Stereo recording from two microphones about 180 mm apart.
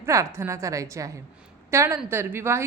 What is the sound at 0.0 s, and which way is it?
A woman's voice, 15° right (ahead or behind).